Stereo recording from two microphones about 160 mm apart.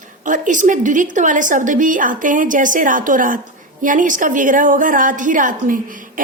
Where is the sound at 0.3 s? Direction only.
55° right (ahead or behind).